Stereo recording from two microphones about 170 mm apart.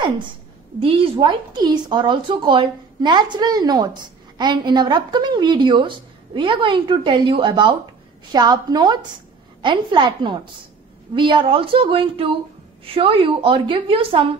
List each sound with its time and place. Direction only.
0.7 s a woman's voice: 35° right (ahead or behind)